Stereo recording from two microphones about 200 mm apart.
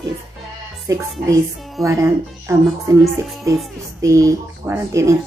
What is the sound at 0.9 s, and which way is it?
Speech, 15° right (ahead or behind).